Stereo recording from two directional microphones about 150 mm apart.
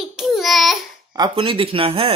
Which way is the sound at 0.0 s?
Centre (ahead or behind).